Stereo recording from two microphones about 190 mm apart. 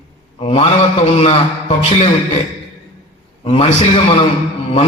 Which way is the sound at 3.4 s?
30° left (ahead or behind).